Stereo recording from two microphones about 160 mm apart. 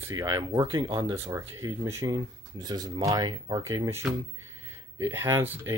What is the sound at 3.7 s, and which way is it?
Speech, 15° right (ahead or behind).